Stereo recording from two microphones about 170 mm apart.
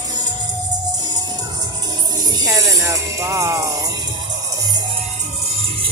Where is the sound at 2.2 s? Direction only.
25° right (ahead or behind).